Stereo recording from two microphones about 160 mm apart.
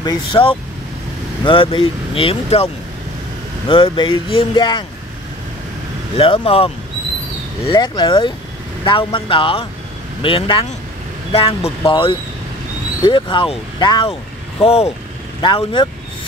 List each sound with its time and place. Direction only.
0.0 s speech: 30° left (ahead or behind)
6.1 s speech: 35° left (ahead or behind)
14.6 s speech: 40° left (ahead or behind)